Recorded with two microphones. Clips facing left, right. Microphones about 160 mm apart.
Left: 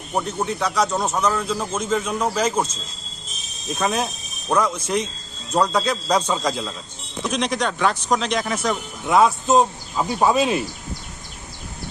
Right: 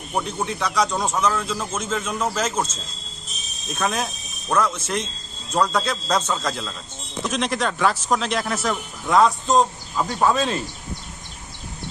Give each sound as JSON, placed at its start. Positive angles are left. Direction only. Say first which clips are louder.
{"t": 0.1, "sound": "a man's voice", "louder": "left 2 dB", "side_deg": 5}